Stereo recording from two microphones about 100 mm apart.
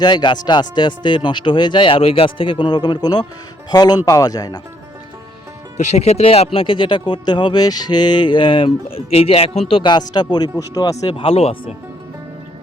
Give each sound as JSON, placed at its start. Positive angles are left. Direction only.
{"t": 0.0, "sound": "speech", "side_deg": 50}
{"t": 6.0, "sound": "speech", "side_deg": 90}
{"t": 10.9, "sound": "speech", "side_deg": 65}